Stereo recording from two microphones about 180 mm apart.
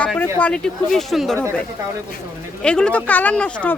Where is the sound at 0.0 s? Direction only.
10° left (ahead or behind).